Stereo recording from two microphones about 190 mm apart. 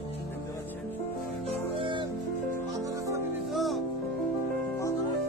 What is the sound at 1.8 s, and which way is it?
Music, 25° right (ahead or behind).